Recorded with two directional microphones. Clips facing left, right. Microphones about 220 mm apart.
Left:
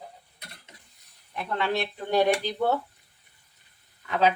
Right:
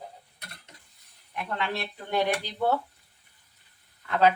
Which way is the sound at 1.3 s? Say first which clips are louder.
Left 2 dB; 35° left (ahead or behind).